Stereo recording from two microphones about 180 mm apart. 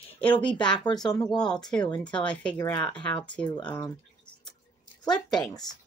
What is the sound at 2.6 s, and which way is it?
Speech, 20° left (ahead or behind).